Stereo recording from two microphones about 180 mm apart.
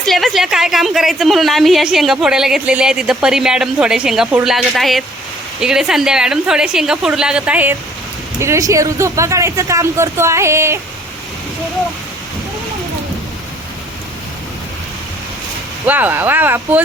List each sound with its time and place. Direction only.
0.0 s a woman's voice: centre (ahead or behind)
15.9 s speech: 10° right (ahead or behind)